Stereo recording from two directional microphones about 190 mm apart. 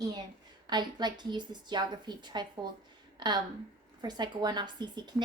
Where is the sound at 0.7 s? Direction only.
25° right (ahead or behind).